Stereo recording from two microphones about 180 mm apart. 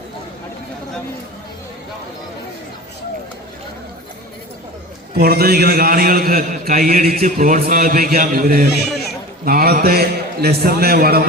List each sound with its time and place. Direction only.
5.1 s a man's voice: 60° right (ahead or behind)